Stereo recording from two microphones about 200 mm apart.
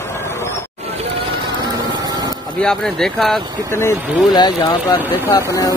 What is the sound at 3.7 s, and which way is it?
Speech, 15° left (ahead or behind).